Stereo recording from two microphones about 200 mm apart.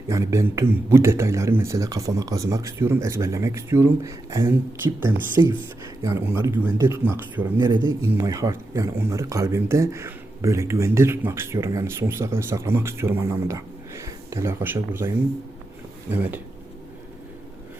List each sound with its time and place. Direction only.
0.1 s speech: 15° right (ahead or behind)